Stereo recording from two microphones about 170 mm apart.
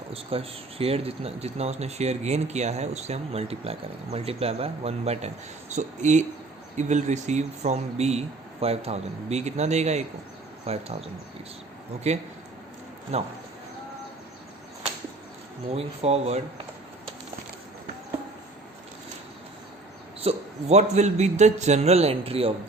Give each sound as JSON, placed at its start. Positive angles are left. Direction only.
{"t": 0.1, "sound": "speech", "side_deg": -35}
{"t": 15.7, "sound": "speech", "side_deg": -35}
{"t": 20.2, "sound": "speech", "side_deg": -40}